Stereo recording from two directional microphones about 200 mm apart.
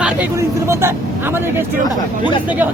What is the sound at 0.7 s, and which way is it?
Speech, 10° right (ahead or behind).